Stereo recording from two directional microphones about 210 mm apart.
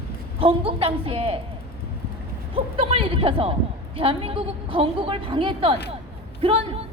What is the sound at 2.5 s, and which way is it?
A woman's voice, 25° right (ahead or behind).